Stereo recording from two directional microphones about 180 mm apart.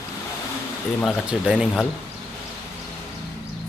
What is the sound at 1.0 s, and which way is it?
Speech, 5° right (ahead or behind).